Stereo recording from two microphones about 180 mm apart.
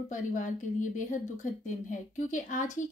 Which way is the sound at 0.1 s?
45° left (ahead or behind).